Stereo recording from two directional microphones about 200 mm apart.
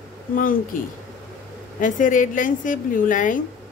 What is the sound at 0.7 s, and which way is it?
A woman's voice, 45° left (ahead or behind).